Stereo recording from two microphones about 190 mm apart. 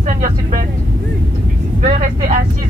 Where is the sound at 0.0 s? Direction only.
45° right (ahead or behind).